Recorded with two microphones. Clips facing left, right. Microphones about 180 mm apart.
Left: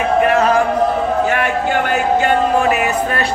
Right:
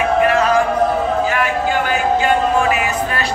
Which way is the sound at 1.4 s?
60° left (ahead or behind).